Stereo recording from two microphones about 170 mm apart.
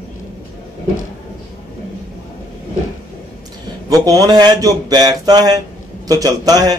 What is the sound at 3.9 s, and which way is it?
Speech, 20° right (ahead or behind).